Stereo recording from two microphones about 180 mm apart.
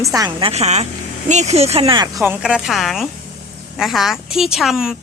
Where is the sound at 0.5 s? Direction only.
35° right (ahead or behind).